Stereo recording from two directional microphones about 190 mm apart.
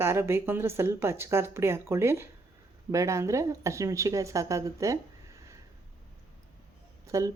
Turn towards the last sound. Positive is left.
turn(degrees=-15)  # may be behind; listen again after turning